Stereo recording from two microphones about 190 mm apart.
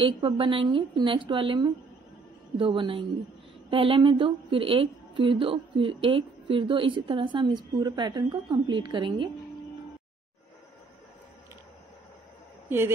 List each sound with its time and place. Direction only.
0.0 s a woman's voice: 25° right (ahead or behind)
12.6 s a woman's voice: 10° right (ahead or behind)